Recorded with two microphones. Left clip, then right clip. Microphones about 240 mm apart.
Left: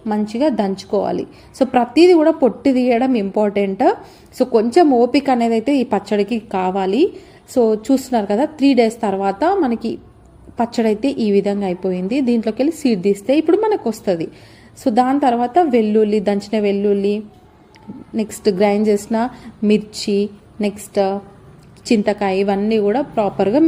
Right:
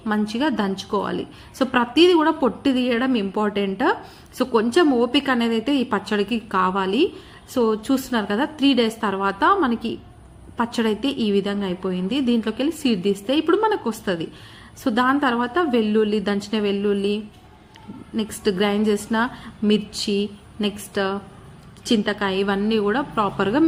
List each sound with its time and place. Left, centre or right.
0.1 s a woman's voice: centre
6.7 s a woman's voice: right
7.5 s a woman's voice: centre
18.2 s a woman's voice: centre